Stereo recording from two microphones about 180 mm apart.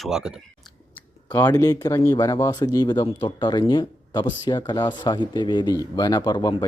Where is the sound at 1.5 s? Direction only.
20° left (ahead or behind).